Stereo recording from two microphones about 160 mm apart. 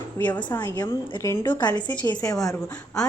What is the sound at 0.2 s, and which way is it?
A woman's voice, 10° left (ahead or behind).